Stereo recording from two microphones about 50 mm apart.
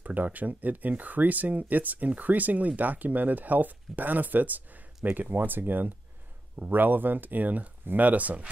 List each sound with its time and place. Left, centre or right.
0.0 s speech: right